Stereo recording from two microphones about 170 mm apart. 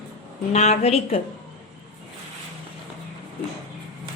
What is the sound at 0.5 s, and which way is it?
Speech, 40° left (ahead or behind).